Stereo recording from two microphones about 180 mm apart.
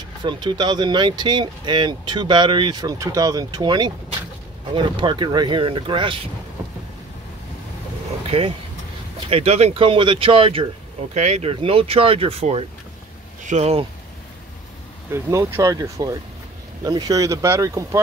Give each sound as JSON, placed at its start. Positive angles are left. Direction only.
{"t": 0.2, "sound": "speech", "side_deg": -25}
{"t": 8.3, "sound": "speech", "side_deg": -30}
{"t": 15.0, "sound": "speech", "side_deg": -15}